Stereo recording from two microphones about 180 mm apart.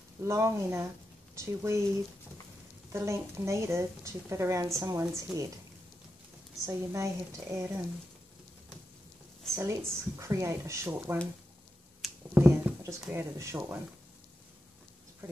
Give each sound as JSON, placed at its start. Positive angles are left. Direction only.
{"t": 0.2, "sound": "a woman's voice", "side_deg": -15}
{"t": 2.9, "sound": "a woman's voice", "side_deg": -15}
{"t": 6.6, "sound": "a woman's voice", "side_deg": -15}
{"t": 9.6, "sound": "a woman's voice", "side_deg": -15}